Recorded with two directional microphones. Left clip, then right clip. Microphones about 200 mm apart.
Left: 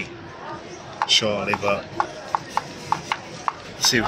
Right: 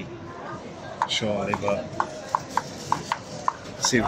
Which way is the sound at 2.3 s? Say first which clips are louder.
Left 1 dB; 40° left (ahead or behind).